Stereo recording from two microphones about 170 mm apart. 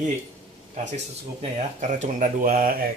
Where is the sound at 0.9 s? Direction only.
40° right (ahead or behind).